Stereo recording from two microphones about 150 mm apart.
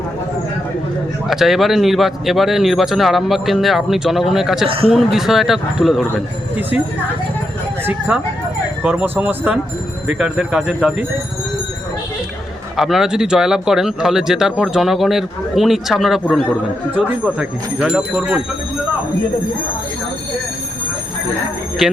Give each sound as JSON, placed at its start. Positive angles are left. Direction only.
{"t": 1.3, "sound": "speech", "side_deg": 0}
{"t": 4.6, "sound": "a man's voice", "side_deg": -40}
{"t": 4.9, "sound": "speech", "side_deg": 0}
{"t": 7.9, "sound": "speech", "side_deg": -5}
{"t": 12.7, "sound": "speech", "side_deg": 0}
{"t": 17.3, "sound": "speech", "side_deg": -5}